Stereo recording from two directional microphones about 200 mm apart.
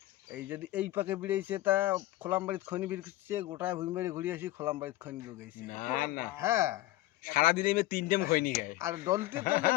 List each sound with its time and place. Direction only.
0.3 s speech: 10° right (ahead or behind)
5.6 s speech: 45° left (ahead or behind)
6.3 s speech: 15° right (ahead or behind)
7.3 s speech: 45° left (ahead or behind)
8.8 s speech: 15° right (ahead or behind)
9.4 s speech: 45° left (ahead or behind)